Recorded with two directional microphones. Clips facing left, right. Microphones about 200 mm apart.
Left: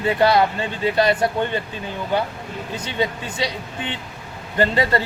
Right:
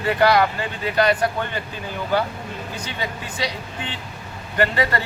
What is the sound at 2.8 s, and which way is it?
Speech, 25° left (ahead or behind).